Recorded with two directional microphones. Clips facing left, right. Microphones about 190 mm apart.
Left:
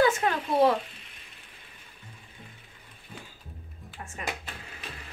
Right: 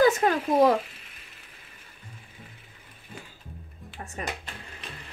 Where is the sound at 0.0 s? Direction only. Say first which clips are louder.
Right 3 dB; 40° right (ahead or behind).